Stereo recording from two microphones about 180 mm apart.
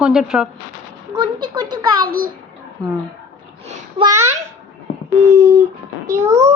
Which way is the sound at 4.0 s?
15° right (ahead or behind).